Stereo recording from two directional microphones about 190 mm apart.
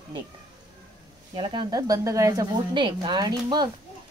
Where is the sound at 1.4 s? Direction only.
25° right (ahead or behind).